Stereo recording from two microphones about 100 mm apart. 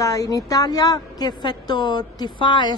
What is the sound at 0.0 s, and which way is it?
A woman's voice, 35° left (ahead or behind).